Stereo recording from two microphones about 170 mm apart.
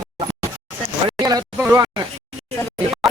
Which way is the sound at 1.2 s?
20° right (ahead or behind).